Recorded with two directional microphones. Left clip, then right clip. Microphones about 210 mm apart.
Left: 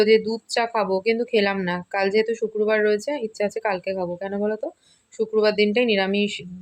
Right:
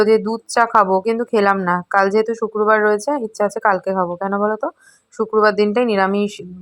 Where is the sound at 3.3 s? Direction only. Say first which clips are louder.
Right 9 dB; centre (ahead or behind).